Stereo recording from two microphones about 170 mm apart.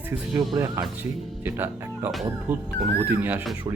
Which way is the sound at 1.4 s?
15° right (ahead or behind).